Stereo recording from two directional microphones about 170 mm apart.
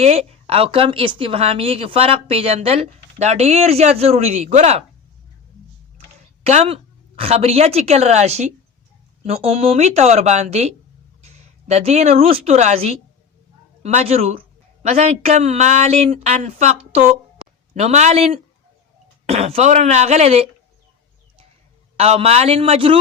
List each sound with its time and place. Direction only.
0.0 s a woman's voice: 40° right (ahead or behind)
6.4 s a woman's voice: 40° right (ahead or behind)
21.9 s a woman's voice: 35° right (ahead or behind)